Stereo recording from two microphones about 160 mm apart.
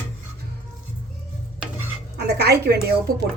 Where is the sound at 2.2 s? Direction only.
90° right.